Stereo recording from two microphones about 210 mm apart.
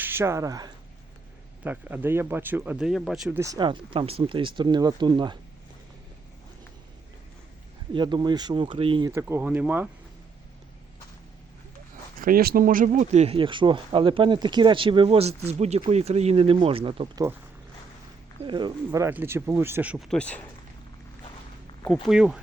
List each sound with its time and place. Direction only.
0.0 s speech: 10° right (ahead or behind)
7.9 s speech: 20° right (ahead or behind)
12.2 s speech: 45° right (ahead or behind); by 17.2 s 25° right (ahead or behind)
18.4 s speech: 20° right (ahead or behind)
18.9 s speech: 10° right (ahead or behind); by 20.4 s 5° left (ahead or behind)
22.0 s speech: 5° right (ahead or behind)